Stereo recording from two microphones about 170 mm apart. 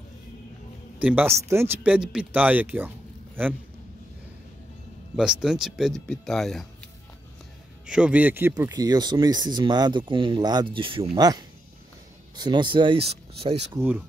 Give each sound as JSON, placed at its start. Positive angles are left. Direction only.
{"t": 0.9, "sound": "a man's voice", "side_deg": -10}
{"t": 5.1, "sound": "speech", "side_deg": -5}
{"t": 7.8, "sound": "speech", "side_deg": -5}
{"t": 13.7, "sound": "speech", "side_deg": -10}